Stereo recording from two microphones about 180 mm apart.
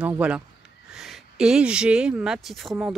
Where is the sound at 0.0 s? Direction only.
5° right (ahead or behind).